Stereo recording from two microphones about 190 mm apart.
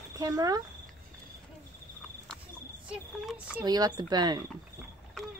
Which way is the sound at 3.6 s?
20° right (ahead or behind).